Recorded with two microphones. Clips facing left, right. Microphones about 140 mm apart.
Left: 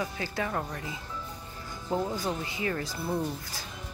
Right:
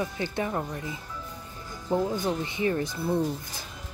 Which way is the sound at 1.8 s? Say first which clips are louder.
Right 4 dB; 15° right (ahead or behind).